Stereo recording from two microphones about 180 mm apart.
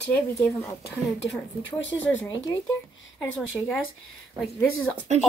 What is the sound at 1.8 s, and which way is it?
Speech, 90° left.